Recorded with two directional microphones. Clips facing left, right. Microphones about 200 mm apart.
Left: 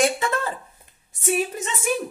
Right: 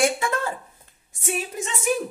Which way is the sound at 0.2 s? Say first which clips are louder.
Left 1 dB; 10° right (ahead or behind).